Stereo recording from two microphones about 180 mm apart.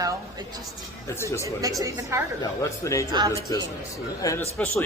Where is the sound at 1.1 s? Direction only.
15° left (ahead or behind).